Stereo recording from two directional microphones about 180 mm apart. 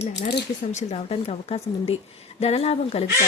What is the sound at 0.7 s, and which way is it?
Speech, 40° left (ahead or behind).